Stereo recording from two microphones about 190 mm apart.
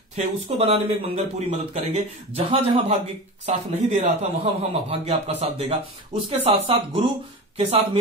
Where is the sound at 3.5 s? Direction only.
40° right (ahead or behind).